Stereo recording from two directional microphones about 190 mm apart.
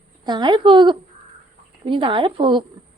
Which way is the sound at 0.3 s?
25° right (ahead or behind).